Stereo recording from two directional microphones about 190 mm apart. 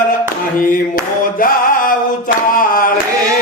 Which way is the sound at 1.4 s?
45° left (ahead or behind).